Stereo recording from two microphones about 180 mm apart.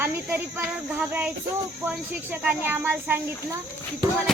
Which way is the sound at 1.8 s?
5° right (ahead or behind).